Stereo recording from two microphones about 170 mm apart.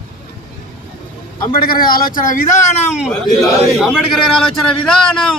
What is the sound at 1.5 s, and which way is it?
A man's voice, 60° left (ahead or behind).